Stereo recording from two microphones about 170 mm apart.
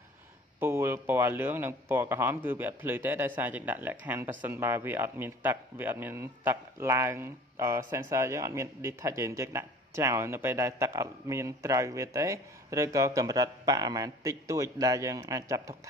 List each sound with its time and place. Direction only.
0.6 s speech: 15° right (ahead or behind)